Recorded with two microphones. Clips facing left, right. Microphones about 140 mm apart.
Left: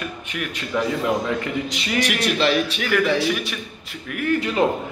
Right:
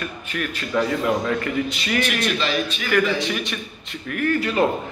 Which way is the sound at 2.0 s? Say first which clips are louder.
Left 5 dB; 70° left (ahead or behind).